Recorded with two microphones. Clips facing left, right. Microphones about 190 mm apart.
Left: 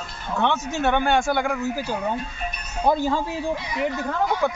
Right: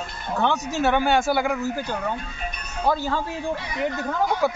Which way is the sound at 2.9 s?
20° left (ahead or behind).